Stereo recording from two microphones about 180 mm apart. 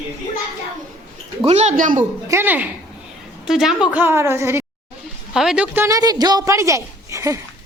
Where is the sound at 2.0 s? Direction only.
10° right (ahead or behind).